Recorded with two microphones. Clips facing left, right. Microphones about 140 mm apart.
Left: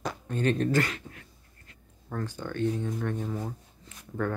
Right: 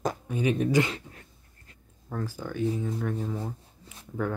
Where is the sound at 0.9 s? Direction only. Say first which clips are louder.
Right 2 dB; 30° right (ahead or behind).